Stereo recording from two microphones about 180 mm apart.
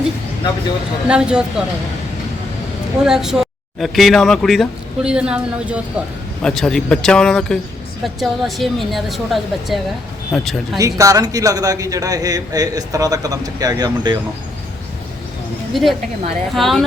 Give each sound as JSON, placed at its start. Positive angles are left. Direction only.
{"t": 1.0, "sound": "speech", "side_deg": -5}
{"t": 3.0, "sound": "speech", "side_deg": -5}
{"t": 10.8, "sound": "a man's voice", "side_deg": -20}
{"t": 15.7, "sound": "speech", "side_deg": 0}